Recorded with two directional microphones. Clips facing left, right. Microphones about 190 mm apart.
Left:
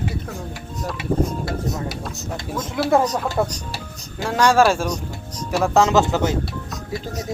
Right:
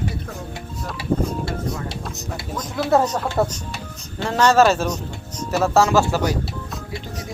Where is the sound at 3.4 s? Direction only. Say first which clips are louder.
Right 2 dB; 5° right (ahead or behind).